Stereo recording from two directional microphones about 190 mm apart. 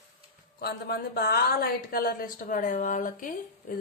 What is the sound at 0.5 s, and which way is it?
A woman's voice, 55° left (ahead or behind).